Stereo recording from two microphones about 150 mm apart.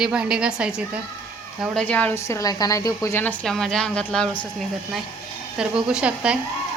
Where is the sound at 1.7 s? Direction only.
10° left (ahead or behind).